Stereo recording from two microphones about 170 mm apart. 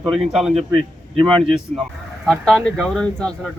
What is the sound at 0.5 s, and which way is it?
Speech, 35° right (ahead or behind).